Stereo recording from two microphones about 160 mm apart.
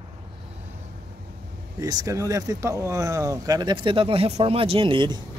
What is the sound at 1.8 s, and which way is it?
Speech, 20° right (ahead or behind).